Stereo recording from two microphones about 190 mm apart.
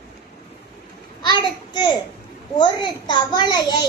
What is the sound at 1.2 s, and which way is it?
A child's voice, 25° left (ahead or behind).